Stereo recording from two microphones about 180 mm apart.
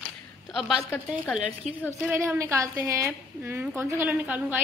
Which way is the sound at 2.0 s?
5° right (ahead or behind).